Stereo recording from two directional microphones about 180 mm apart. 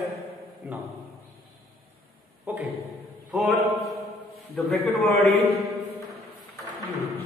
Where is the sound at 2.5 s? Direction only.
10° right (ahead or behind).